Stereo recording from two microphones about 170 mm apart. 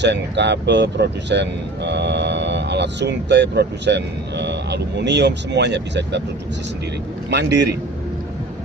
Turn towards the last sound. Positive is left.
turn(degrees=-85)